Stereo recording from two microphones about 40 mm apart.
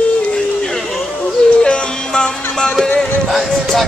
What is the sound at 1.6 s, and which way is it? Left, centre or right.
Music, left.